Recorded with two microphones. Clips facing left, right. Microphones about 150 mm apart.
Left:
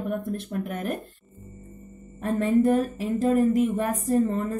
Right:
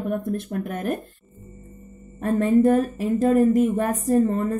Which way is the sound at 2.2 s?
45° right (ahead or behind).